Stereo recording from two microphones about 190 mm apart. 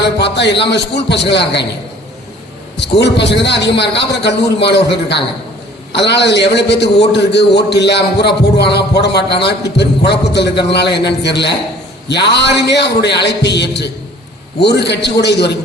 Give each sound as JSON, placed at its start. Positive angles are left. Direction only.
{"t": 0.0, "sound": "a man's voice", "side_deg": 65}
{"t": 2.7, "sound": "a man's voice", "side_deg": 65}